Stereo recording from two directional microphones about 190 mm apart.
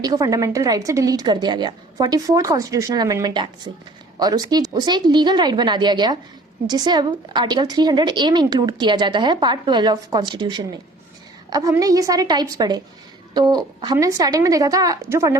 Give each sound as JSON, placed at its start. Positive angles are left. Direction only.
{"t": 0.0, "sound": "a woman's voice", "side_deg": -20}